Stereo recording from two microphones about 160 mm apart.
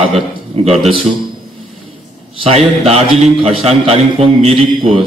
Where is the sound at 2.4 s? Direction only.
40° right (ahead or behind).